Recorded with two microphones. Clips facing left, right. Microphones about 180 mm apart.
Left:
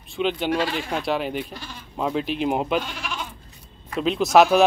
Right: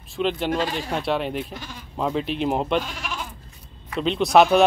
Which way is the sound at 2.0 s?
Centre (ahead or behind).